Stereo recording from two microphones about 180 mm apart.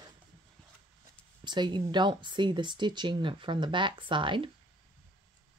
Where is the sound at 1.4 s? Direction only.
25° right (ahead or behind).